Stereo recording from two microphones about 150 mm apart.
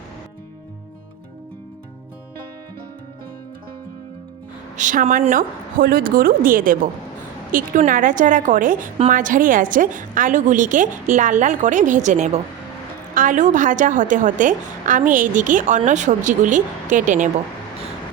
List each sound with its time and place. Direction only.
4.8 s a woman's voice: 60° right (ahead or behind)